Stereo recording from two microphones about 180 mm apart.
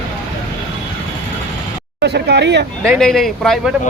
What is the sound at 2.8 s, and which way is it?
Speech, centre (ahead or behind).